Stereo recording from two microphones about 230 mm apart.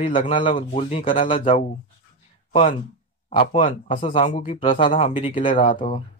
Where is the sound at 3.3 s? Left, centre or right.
Left.